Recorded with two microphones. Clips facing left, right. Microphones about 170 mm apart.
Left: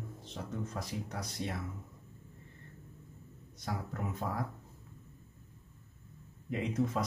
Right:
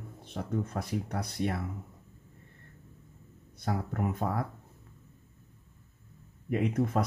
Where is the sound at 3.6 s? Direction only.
60° right (ahead or behind).